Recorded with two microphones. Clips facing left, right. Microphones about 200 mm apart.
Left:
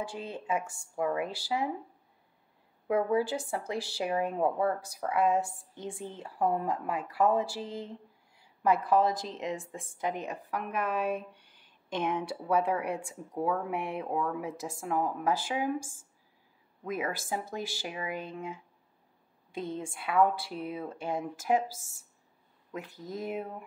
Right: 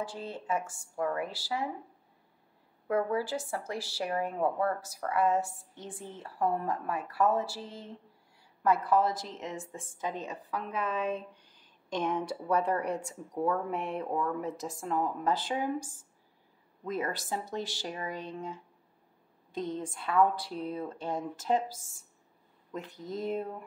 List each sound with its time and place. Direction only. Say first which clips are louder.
0.1 s speech: left 1 dB; 15° left (ahead or behind)
2.9 s speech: left 2 dB; 15° left (ahead or behind)